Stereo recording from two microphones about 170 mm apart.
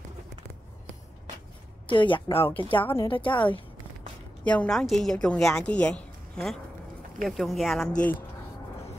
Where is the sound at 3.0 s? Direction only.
30° left (ahead or behind).